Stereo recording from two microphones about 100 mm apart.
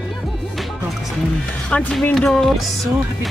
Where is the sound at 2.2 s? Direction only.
5° left (ahead or behind).